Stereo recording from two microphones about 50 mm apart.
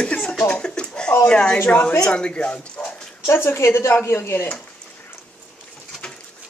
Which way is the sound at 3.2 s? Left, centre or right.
Left.